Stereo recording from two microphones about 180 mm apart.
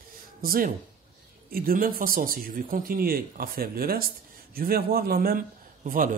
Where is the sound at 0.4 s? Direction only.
50° right (ahead or behind).